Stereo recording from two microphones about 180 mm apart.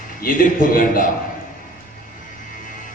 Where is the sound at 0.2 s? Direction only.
50° left (ahead or behind).